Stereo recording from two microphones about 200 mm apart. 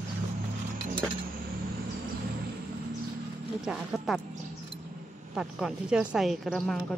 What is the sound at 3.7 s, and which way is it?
Speech, centre (ahead or behind).